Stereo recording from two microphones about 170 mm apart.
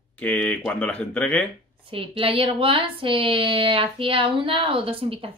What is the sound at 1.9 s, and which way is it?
Speech, 30° right (ahead or behind).